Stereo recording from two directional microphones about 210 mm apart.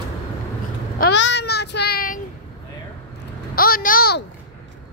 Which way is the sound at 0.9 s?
55° left (ahead or behind).